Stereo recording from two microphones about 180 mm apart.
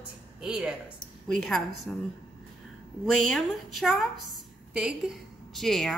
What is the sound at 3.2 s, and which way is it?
A woman's voice, centre (ahead or behind).